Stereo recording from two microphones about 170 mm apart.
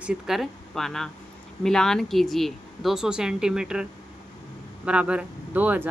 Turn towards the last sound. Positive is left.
turn(degrees=-10)  # may be behind; listen again after turning